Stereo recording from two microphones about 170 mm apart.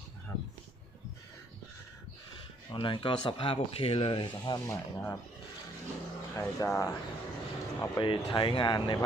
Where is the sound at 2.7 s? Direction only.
30° left (ahead or behind).